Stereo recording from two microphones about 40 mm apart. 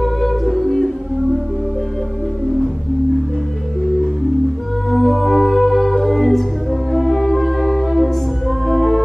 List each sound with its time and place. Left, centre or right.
0.0 s music: centre
4.8 s music: centre
5.2 s music: centre